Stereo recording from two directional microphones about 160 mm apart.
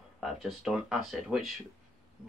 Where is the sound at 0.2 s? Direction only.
Centre (ahead or behind).